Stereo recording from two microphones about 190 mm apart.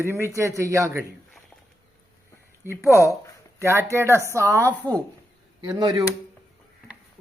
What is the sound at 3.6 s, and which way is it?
Speech, 15° right (ahead or behind).